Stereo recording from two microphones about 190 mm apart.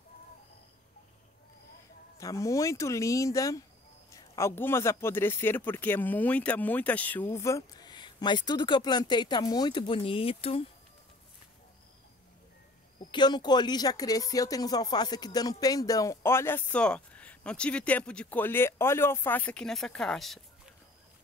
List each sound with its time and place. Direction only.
2.1 s speech: 15° left (ahead or behind)
13.0 s speech: 25° left (ahead or behind); by 20.3 s centre (ahead or behind)